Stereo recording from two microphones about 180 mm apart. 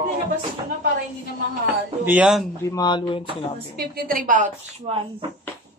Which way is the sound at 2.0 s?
5° right (ahead or behind).